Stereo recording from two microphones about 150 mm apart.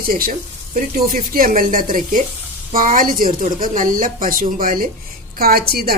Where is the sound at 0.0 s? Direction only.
75° right (ahead or behind).